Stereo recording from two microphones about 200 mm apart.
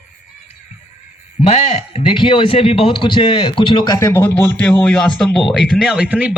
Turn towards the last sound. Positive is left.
turn(degrees=-5)  # may be behind; listen again after turning